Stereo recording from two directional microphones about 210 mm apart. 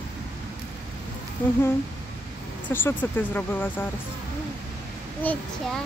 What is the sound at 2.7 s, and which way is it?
A woman's voice, 10° left (ahead or behind).